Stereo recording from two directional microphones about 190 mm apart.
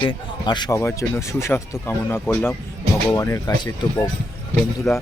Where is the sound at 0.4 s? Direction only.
25° left (ahead or behind).